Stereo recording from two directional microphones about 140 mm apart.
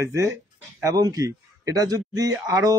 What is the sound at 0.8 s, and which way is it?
Speech, 25° right (ahead or behind).